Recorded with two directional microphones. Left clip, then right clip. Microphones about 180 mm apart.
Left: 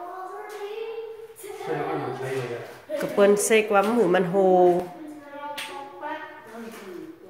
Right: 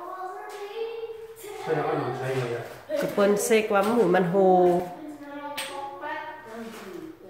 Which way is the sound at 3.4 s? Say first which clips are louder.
Left 2 dB; 5° left (ahead or behind).